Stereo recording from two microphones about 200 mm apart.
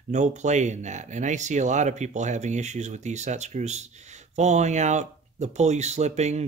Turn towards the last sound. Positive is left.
turn(degrees=-35)  # may be behind; listen again after turning